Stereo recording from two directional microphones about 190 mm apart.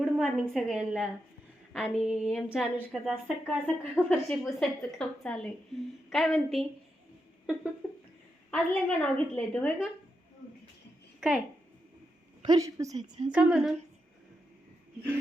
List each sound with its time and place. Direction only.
0.0 s a woman's voice: centre (ahead or behind)
7.8 s a sound: 5° left (ahead or behind)
8.4 s a woman's voice: 5° left (ahead or behind)
11.2 s speech: centre (ahead or behind)
12.4 s a woman's voice: 20° right (ahead or behind)
13.3 s a woman's voice: 5° right (ahead or behind)